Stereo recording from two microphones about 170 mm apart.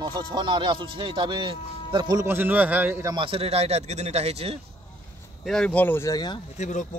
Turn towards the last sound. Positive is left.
turn(degrees=45)  # may be behind; listen again after turning